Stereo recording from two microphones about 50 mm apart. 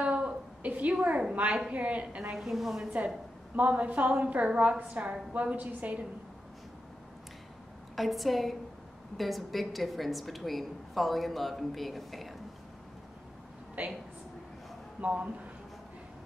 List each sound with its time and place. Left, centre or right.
0.0 s a sound: right
0.6 s a woman's voice: right
2.3 s a woman's voice: centre
3.5 s a woman's voice: right
7.9 s a woman's voice: centre
13.8 s a woman's voice: right
15.0 s speech: right